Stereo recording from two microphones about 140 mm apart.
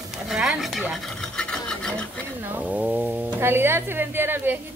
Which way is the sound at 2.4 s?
15° right (ahead or behind).